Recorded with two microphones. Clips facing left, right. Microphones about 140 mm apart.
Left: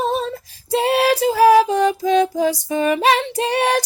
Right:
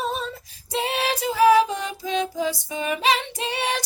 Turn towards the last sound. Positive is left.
turn(degrees=45)  # may be behind; listen again after turning